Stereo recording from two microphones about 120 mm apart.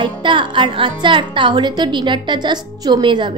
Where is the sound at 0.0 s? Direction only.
40° right (ahead or behind).